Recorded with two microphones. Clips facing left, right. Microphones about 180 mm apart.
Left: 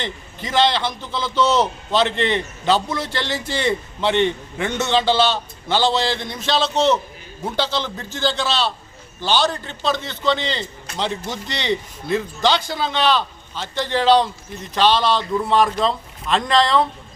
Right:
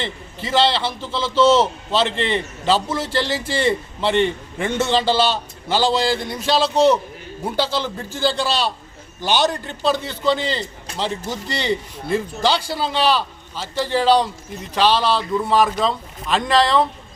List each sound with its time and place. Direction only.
0.4 s a man's voice: 5° right (ahead or behind)
1.5 s a man's voice: 30° right (ahead or behind)
2.2 s a man's voice: centre (ahead or behind)